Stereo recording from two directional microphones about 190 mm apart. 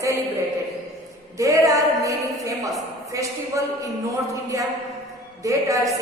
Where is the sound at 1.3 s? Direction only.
15° right (ahead or behind).